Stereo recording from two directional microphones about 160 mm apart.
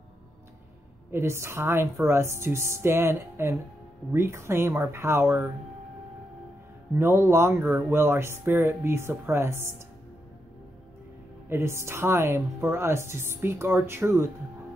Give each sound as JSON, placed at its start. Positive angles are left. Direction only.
{"t": 1.1, "sound": "a woman's voice", "side_deg": -15}
{"t": 7.0, "sound": "a woman's voice", "side_deg": -15}
{"t": 11.4, "sound": "a woman's voice", "side_deg": -15}